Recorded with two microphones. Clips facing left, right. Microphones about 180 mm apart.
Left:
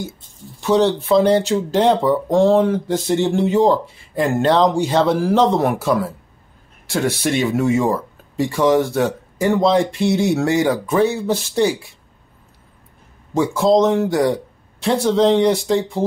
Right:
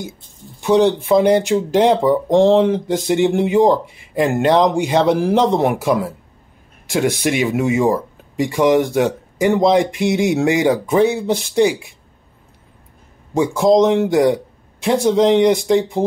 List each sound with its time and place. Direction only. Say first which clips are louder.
0.6 s speech: right 2 dB; 15° right (ahead or behind)
13.3 s speech: right 1 dB; 15° right (ahead or behind)